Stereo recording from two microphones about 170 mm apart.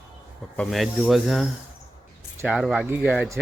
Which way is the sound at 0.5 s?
Centre (ahead or behind).